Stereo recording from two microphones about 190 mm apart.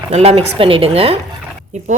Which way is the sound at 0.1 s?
35° right (ahead or behind).